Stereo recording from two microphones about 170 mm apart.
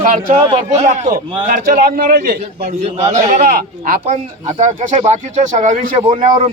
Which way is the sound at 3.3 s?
55° right (ahead or behind).